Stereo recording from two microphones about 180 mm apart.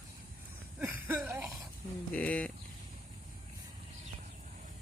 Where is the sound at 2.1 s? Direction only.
10° left (ahead or behind).